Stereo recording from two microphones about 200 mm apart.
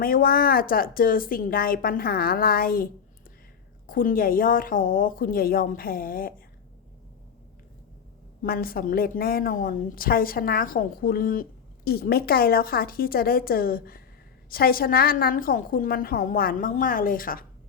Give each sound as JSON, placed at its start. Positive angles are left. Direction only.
{"t": 0.0, "sound": "a woman's voice", "side_deg": 45}
{"t": 8.4, "sound": "a woman's voice", "side_deg": 45}